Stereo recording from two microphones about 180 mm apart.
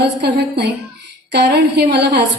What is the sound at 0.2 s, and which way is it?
A woman's voice, 65° right (ahead or behind).